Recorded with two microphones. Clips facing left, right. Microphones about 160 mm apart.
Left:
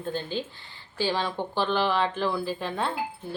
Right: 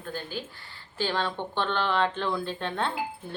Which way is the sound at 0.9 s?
10° left (ahead or behind).